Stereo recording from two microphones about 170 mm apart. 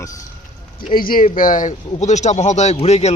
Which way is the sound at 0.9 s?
55° left (ahead or behind).